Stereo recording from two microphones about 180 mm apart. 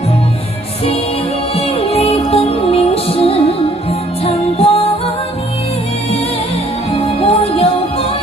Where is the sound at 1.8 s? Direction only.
35° left (ahead or behind).